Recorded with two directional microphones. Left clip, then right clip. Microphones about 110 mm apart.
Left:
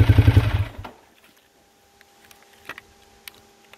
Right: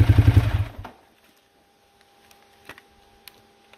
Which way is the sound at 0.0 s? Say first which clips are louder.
Left 2 dB; 15° left (ahead or behind).